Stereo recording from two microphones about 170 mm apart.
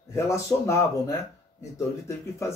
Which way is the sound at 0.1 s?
15° left (ahead or behind).